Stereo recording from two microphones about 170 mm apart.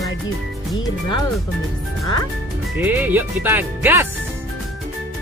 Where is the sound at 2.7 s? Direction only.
10° right (ahead or behind).